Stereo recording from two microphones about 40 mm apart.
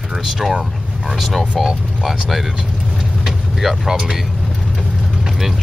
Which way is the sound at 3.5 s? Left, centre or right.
Centre.